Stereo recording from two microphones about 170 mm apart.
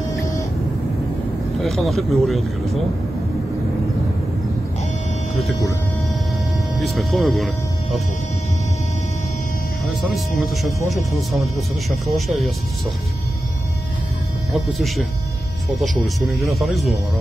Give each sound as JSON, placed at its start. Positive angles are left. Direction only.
{"t": 0.2, "sound": "vehicle", "side_deg": 20}
{"t": 1.6, "sound": "speech", "side_deg": 0}
{"t": 6.7, "sound": "speech", "side_deg": 0}
{"t": 10.1, "sound": "speech", "side_deg": 0}
{"t": 14.5, "sound": "speech", "side_deg": 0}
{"t": 16.2, "sound": "speech", "side_deg": 0}